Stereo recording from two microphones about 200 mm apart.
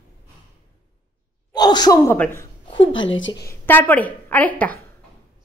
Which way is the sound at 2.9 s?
70° left (ahead or behind).